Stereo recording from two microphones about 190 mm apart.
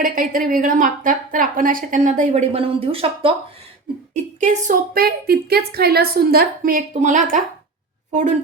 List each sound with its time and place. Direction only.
0.0 s speech: 45° right (ahead or behind); by 3.3 s 30° right (ahead or behind)
4.4 s a woman's voice: 40° right (ahead or behind)